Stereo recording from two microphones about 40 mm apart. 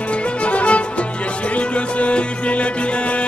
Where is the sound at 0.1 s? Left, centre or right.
Left.